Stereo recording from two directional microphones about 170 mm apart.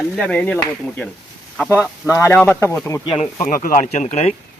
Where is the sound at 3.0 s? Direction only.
35° left (ahead or behind).